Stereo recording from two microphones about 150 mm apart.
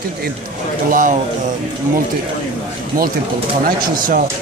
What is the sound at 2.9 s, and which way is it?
Speech, 65° right (ahead or behind).